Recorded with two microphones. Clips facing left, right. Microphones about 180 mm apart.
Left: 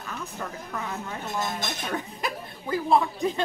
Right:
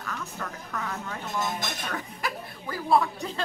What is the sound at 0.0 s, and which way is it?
Speech, 20° left (ahead or behind).